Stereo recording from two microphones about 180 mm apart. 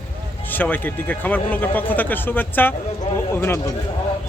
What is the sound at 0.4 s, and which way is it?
Speech, 10° left (ahead or behind).